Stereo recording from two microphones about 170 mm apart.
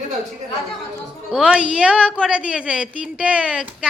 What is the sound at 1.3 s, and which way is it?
A woman's voice, 5° right (ahead or behind).